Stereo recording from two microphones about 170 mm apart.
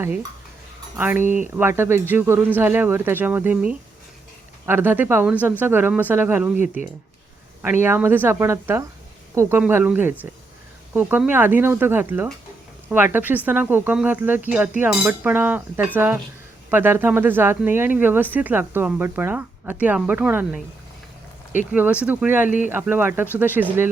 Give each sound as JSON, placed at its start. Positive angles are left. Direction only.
{"t": 0.9, "sound": "speech", "side_deg": -10}
{"t": 7.6, "sound": "speech", "side_deg": -15}
{"t": 21.7, "sound": "speech", "side_deg": -10}
{"t": 22.4, "sound": "speech", "side_deg": 50}
{"t": 22.7, "sound": "speech", "side_deg": -10}